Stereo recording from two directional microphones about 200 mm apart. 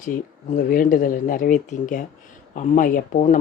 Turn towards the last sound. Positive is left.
turn(degrees=40)  # may be behind; listen again after turning